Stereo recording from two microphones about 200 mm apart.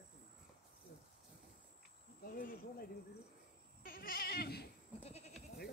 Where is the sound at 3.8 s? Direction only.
45° left (ahead or behind).